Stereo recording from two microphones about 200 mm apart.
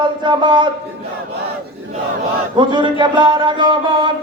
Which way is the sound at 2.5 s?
25° right (ahead or behind).